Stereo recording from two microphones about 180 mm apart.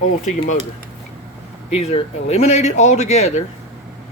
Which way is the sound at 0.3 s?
40° left (ahead or behind).